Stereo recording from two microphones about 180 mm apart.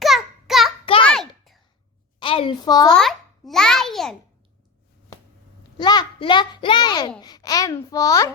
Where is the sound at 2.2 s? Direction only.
30° left (ahead or behind).